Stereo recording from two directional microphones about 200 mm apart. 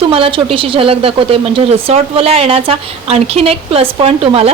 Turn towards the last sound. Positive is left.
turn(degrees=-30)  # may be behind; listen again after turning